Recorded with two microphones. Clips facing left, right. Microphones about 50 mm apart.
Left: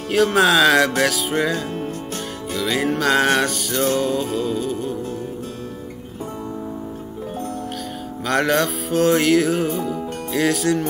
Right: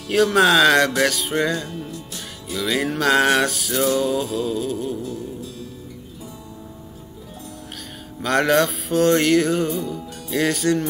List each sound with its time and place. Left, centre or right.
0.1 s music: centre
2.5 s music: centre
8.2 s music: centre